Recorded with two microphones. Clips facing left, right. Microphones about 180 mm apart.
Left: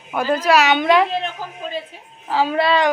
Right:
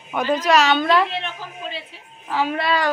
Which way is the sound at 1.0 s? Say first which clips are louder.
Left 4 dB; 40° left (ahead or behind).